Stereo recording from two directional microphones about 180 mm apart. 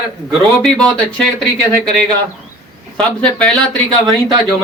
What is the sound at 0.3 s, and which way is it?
Speech, centre (ahead or behind).